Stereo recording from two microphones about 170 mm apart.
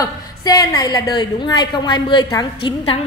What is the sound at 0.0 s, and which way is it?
A woman's voice, 20° left (ahead or behind).